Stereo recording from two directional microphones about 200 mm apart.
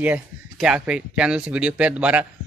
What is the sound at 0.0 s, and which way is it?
Speech, 5° right (ahead or behind).